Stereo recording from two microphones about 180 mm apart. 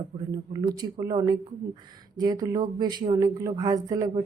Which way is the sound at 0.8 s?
20° right (ahead or behind).